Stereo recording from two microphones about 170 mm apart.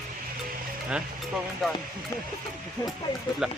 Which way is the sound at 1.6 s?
Centre (ahead or behind).